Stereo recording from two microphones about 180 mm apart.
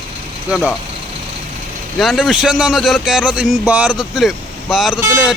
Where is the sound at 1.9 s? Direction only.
Centre (ahead or behind).